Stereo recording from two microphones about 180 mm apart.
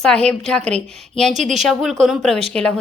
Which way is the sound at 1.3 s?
40° right (ahead or behind).